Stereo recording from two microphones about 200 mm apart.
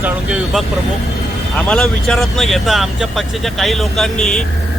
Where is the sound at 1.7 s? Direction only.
5° left (ahead or behind).